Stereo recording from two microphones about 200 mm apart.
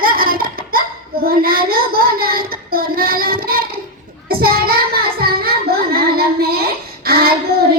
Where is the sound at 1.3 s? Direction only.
50° right (ahead or behind).